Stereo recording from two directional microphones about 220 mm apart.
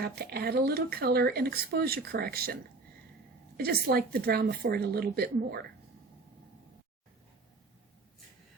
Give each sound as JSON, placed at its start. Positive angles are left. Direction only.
{"t": 0.0, "sound": "speech", "side_deg": -45}
{"t": 3.6, "sound": "speech", "side_deg": -45}